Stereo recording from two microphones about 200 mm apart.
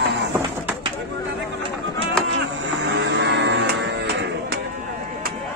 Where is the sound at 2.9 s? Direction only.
60° right (ahead or behind).